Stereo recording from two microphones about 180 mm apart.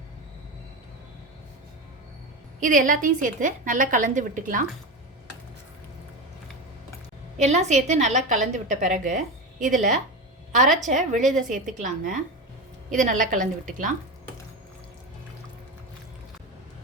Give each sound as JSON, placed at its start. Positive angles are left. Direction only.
{"t": 2.6, "sound": "a woman's voice", "side_deg": -50}
{"t": 7.3, "sound": "a woman's voice", "side_deg": -40}